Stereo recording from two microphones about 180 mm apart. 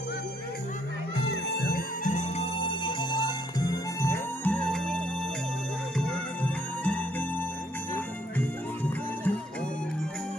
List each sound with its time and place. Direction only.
1.3 s music: 65° left (ahead or behind); by 2.4 s 45° left (ahead or behind)
2.6 s music: 25° left (ahead or behind); by 4.9 s 5° left (ahead or behind)
5.9 s music: 5° left (ahead or behind)